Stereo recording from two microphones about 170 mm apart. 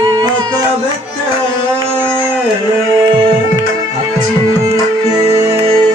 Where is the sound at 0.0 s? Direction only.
25° right (ahead or behind).